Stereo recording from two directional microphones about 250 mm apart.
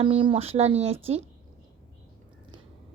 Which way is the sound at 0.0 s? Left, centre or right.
Right.